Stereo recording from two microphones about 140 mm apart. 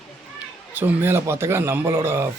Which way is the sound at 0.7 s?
15° right (ahead or behind).